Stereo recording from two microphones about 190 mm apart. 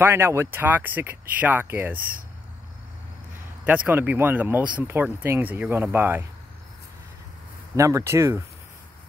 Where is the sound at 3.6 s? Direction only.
10° right (ahead or behind).